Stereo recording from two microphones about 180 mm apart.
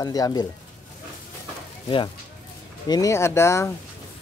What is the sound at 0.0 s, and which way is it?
Speech, 20° left (ahead or behind).